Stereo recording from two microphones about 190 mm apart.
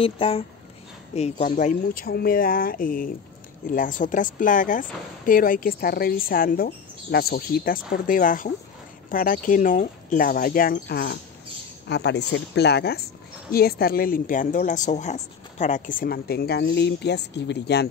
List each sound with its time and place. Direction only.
0.0 s speech: 30° left (ahead or behind); by 17.8 s 60° left (ahead or behind)